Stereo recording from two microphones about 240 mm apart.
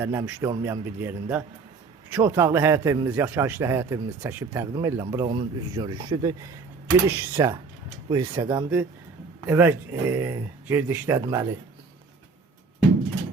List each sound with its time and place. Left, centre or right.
0.0 s a man's voice: centre